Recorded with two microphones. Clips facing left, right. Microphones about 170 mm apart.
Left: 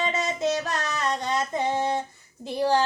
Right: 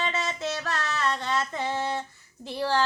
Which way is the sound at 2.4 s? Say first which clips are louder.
Left 4 dB; 15° left (ahead or behind).